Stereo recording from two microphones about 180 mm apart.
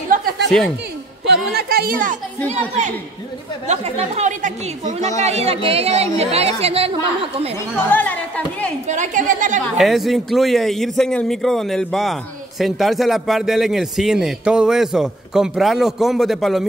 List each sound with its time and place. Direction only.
0.1 s chuckle: 55° right (ahead or behind)
1.2 s a sound: 65° right (ahead or behind)
3.6 s a woman's voice: 35° right (ahead or behind)
7.7 s speech: 10° left (ahead or behind)
8.8 s a woman's voice: 40° right (ahead or behind)
9.8 s a man's voice: centre (ahead or behind)